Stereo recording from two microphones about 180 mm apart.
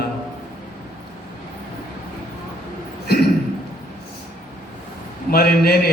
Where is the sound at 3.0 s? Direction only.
60° left (ahead or behind).